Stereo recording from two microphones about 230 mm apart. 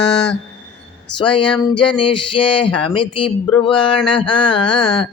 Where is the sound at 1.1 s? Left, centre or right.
Left.